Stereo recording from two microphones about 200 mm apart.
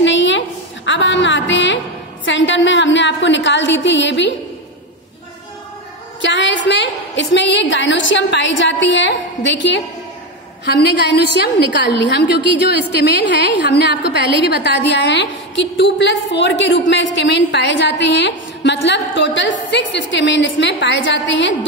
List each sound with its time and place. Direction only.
0.0 s a sound: 65° left (ahead or behind)
2.2 s a woman's voice: 65° left (ahead or behind)
6.2 s a woman's voice: 65° left (ahead or behind)